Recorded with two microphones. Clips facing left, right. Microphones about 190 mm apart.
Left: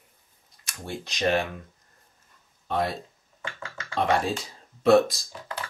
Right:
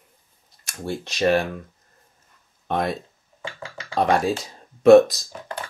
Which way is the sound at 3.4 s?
30° right (ahead or behind).